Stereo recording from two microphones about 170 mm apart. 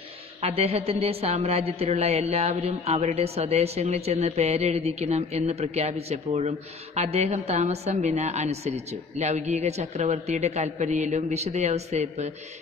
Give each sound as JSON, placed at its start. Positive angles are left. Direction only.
{"t": 0.4, "sound": "a woman's voice", "side_deg": -35}